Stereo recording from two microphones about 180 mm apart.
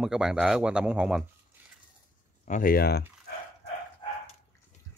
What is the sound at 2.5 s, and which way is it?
Speech, 55° left (ahead or behind).